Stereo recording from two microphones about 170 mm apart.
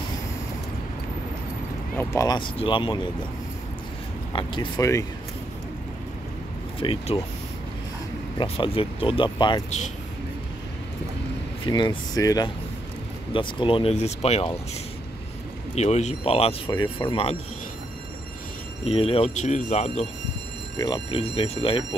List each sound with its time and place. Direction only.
2.0 s speech: 20° left (ahead or behind)
4.3 s speech: 25° left (ahead or behind)
6.8 s speech: 30° left (ahead or behind)
8.4 s speech: 30° left (ahead or behind)
11.6 s speech: 30° left (ahead or behind)
15.7 s speech: 40° left (ahead or behind)
18.9 s speech: 35° left (ahead or behind)
20.7 s speech: 25° left (ahead or behind)